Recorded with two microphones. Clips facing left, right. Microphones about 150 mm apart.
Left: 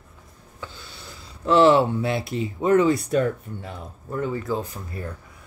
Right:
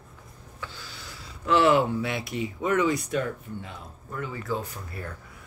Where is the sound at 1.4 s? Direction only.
30° left (ahead or behind).